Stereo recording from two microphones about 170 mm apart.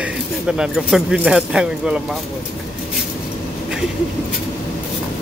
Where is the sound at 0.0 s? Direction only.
5° right (ahead or behind).